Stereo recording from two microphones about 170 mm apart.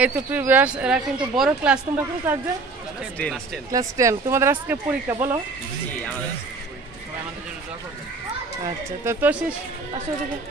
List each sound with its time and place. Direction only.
0.0 s speech: 10° right (ahead or behind)
3.7 s speech: 20° right (ahead or behind)
8.6 s speech: 15° right (ahead or behind)